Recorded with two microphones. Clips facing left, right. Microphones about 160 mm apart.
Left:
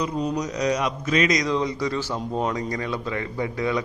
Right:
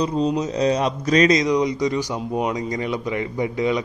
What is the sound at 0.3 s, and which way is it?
Speech, 30° right (ahead or behind).